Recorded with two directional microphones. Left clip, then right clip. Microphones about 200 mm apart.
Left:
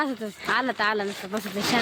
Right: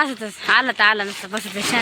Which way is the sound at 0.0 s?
5° right (ahead or behind).